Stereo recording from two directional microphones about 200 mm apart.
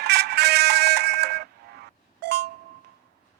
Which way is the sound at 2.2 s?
55° right (ahead or behind).